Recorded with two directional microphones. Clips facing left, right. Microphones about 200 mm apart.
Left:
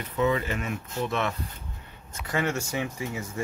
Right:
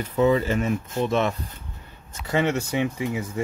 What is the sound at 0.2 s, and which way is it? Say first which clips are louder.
Speech: right 6 dB; 30° right (ahead or behind).